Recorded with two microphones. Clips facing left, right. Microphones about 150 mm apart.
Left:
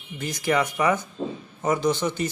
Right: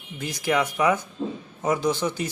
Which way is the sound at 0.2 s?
5° right (ahead or behind).